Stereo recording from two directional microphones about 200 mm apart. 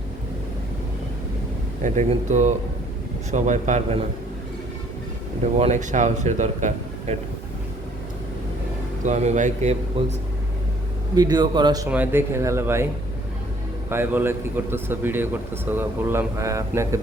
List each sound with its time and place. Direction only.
1.8 s a man's voice: 35° right (ahead or behind)
5.5 s a man's voice: 35° right (ahead or behind)
9.0 s a man's voice: 35° right (ahead or behind)
11.1 s a man's voice: 20° right (ahead or behind)
11.9 s speech: 10° right (ahead or behind)
13.9 s speech: 10° right (ahead or behind)